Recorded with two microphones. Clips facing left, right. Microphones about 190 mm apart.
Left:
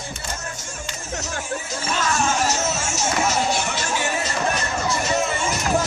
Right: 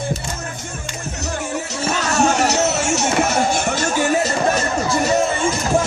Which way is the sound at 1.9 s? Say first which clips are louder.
Right 5 dB; 70° right (ahead or behind).